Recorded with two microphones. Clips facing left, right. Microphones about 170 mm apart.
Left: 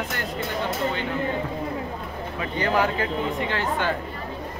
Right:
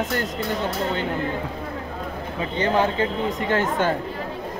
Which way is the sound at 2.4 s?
25° right (ahead or behind).